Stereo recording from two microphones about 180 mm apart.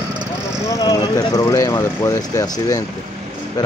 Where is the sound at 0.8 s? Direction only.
20° left (ahead or behind).